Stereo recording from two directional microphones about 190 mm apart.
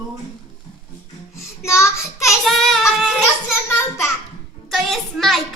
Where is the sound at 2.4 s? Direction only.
Centre (ahead or behind).